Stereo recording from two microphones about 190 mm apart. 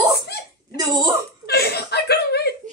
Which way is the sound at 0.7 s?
20° right (ahead or behind).